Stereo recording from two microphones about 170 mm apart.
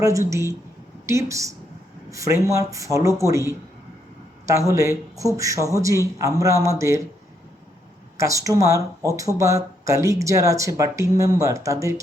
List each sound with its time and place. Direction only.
0.0 s speech: 20° right (ahead or behind)
8.2 s speech: 20° right (ahead or behind)